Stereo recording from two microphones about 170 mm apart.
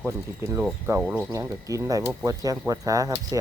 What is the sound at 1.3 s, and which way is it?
Speech, 20° right (ahead or behind).